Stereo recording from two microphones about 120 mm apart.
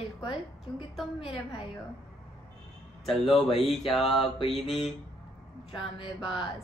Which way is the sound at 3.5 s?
60° left (ahead or behind).